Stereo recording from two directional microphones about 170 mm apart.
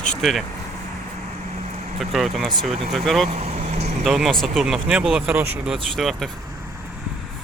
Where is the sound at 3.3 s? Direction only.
40° right (ahead or behind).